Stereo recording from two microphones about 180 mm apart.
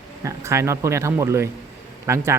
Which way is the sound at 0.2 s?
15° right (ahead or behind).